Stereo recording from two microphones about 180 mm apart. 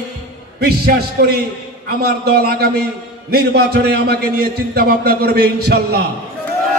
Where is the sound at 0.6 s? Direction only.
60° right (ahead or behind).